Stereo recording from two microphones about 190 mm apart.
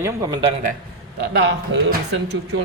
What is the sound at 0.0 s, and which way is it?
Speech, 15° right (ahead or behind).